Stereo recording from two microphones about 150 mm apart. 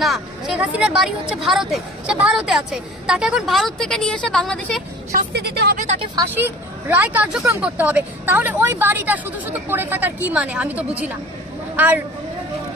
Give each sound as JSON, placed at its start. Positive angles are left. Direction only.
{"t": 0.0, "sound": "speech", "side_deg": 0}
{"t": 5.1, "sound": "a woman's voice", "side_deg": -90}
{"t": 6.3, "sound": "a woman's voice", "side_deg": -10}